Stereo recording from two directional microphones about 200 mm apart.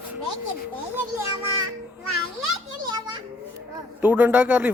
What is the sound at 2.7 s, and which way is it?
Children playing, 20° right (ahead or behind).